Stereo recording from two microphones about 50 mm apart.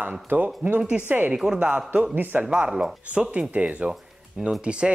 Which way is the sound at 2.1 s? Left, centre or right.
Right.